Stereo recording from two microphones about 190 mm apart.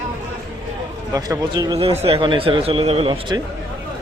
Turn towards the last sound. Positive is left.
turn(degrees=-25)  # may be behind; listen again after turning